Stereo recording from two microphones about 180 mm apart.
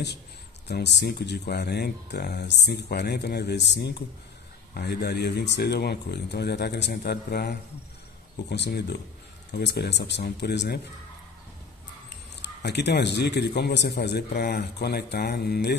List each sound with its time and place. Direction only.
0.7 s speech: 70° left (ahead or behind)
12.1 s speech: 70° left (ahead or behind)